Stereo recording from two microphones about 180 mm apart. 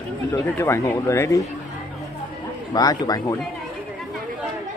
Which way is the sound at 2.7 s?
20° left (ahead or behind).